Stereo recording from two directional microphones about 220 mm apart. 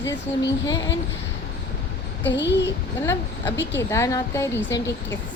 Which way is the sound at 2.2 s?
55° left (ahead or behind).